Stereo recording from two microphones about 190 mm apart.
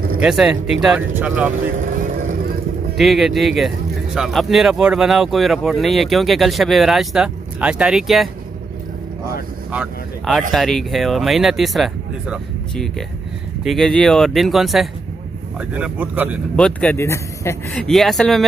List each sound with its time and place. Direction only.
0.2 s speech: 5° right (ahead or behind)
1.8 s vehicle: 45° right (ahead or behind)
3.0 s speech: centre (ahead or behind)
9.7 s speech: 5° right (ahead or behind)
16.5 s speech: 5° left (ahead or behind)
17.8 s speech: centre (ahead or behind)